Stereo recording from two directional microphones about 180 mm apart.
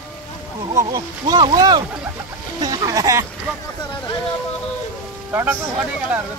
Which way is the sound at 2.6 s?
20° right (ahead or behind).